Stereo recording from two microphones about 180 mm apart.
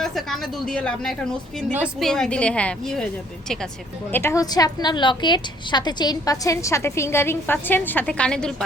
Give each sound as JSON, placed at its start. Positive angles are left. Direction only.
{"t": 0.0, "sound": "a woman's voice", "side_deg": 0}
{"t": 4.1, "sound": "a woman's voice", "side_deg": 15}